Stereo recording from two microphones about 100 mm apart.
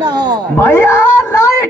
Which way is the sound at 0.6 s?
20° left (ahead or behind).